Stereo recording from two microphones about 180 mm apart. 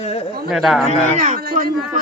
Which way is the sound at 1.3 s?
50° right (ahead or behind).